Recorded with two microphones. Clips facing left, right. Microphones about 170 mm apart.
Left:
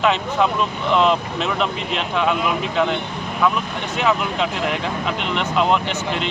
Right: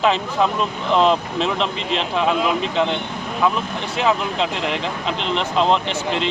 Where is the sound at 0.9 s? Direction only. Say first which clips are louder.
Right 1 dB; 35° right (ahead or behind).